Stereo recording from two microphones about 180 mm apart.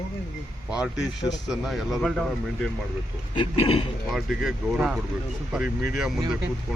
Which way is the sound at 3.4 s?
30° left (ahead or behind).